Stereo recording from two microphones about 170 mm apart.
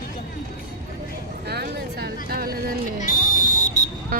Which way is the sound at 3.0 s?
45° left (ahead or behind).